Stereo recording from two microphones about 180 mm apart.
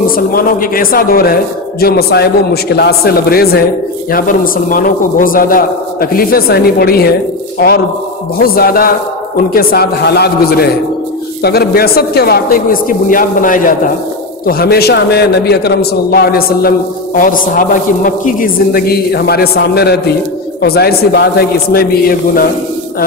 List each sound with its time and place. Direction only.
0.1 s a man's voice: 55° left (ahead or behind)
8.4 s a man's voice: 55° left (ahead or behind)